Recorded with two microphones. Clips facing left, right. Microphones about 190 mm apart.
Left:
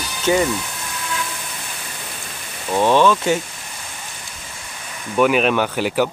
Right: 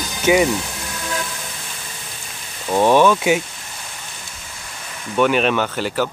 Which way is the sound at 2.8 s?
15° right (ahead or behind).